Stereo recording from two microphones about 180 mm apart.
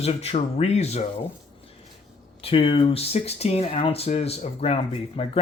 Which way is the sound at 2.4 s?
30° left (ahead or behind).